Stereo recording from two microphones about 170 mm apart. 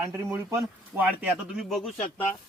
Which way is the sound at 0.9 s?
10° right (ahead or behind).